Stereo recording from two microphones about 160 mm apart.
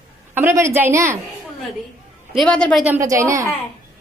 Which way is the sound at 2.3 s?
5° left (ahead or behind).